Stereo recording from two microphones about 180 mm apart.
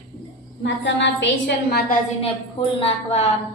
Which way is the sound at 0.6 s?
80° left.